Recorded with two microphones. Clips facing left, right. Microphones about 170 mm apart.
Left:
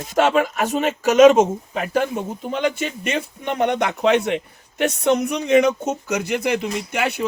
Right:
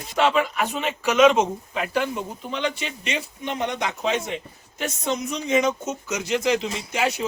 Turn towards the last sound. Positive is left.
turn(degrees=60)  # may be behind; listen again after turning